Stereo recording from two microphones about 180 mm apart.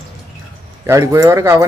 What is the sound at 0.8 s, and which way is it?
Speech, 15° right (ahead or behind).